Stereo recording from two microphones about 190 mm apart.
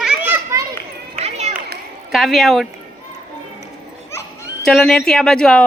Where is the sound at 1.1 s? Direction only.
35° right (ahead or behind).